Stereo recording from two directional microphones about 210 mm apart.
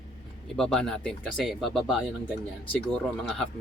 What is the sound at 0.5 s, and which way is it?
A man's voice, 5° left (ahead or behind).